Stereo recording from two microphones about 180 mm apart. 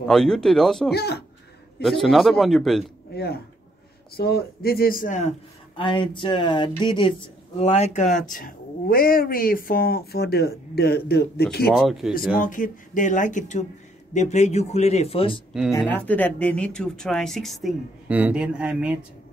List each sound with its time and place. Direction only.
0.1 s speech: 5° left (ahead or behind)
0.9 s speech: 65° left (ahead or behind)
1.8 s speech: centre (ahead or behind)
4.1 s speech: 60° left (ahead or behind); by 5.3 s 45° left (ahead or behind)
5.8 s speech: 25° left (ahead or behind); by 11.4 s 60° left (ahead or behind)
11.7 s speech: 5° right (ahead or behind)
12.4 s a man's voice: 50° left (ahead or behind); by 15.4 s 30° left (ahead or behind)
15.9 s speech: 10° left (ahead or behind)